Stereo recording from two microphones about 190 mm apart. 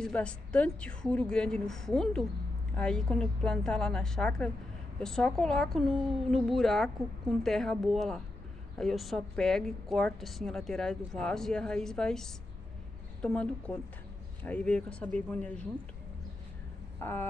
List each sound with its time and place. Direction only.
0.0 s speech: 5° left (ahead or behind)
17.0 s speech: 10° left (ahead or behind)